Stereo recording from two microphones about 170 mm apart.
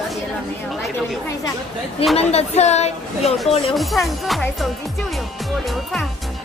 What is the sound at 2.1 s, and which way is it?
Speech, 40° left (ahead or behind).